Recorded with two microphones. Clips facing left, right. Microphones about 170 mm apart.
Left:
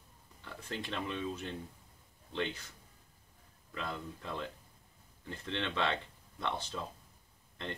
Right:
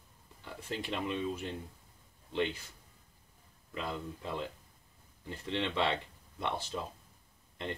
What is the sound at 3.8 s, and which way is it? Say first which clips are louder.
Speech: right 2 dB; 15° right (ahead or behind).